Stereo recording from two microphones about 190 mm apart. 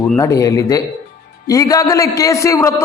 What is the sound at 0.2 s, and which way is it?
A man's voice, 15° left (ahead or behind).